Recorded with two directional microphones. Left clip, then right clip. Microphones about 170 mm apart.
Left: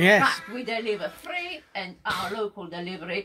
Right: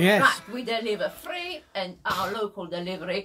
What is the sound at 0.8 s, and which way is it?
Speech, 25° right (ahead or behind).